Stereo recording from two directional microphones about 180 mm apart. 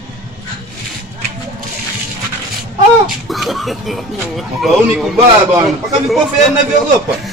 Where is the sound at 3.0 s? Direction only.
Centre (ahead or behind).